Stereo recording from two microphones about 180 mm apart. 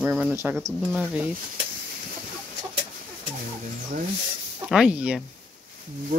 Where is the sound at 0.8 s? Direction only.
5° left (ahead or behind).